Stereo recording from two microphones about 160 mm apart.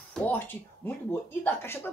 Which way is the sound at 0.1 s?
10° left (ahead or behind).